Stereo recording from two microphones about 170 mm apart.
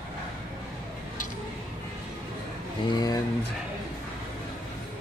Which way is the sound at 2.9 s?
20° left (ahead or behind).